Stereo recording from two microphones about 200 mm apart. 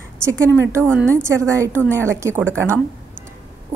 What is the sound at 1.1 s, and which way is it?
A woman's voice, 15° right (ahead or behind).